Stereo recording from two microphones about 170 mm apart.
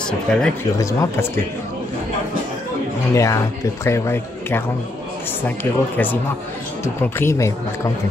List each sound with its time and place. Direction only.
0.0 s speech: 5° left (ahead or behind)
0.7 s speech: 15° left (ahead or behind)
3.2 s speech: 15° left (ahead or behind)